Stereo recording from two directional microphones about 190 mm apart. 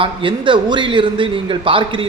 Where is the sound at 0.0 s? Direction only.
25° right (ahead or behind).